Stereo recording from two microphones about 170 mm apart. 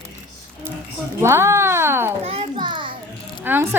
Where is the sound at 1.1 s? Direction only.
15° right (ahead or behind).